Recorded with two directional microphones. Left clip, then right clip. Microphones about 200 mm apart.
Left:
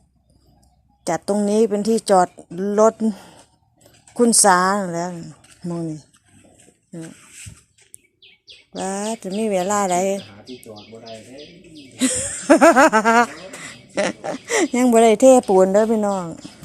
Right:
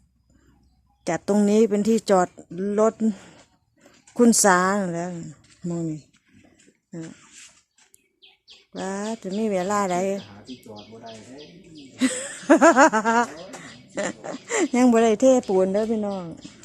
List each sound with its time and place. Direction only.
1.0 s a woman's voice: 15° right (ahead or behind)
8.7 s speech: centre (ahead or behind)
11.9 s speech: centre (ahead or behind)